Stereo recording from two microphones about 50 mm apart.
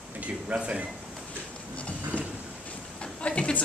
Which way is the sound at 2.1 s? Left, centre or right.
Left.